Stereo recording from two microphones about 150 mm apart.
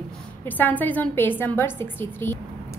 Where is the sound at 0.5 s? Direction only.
10° left (ahead or behind).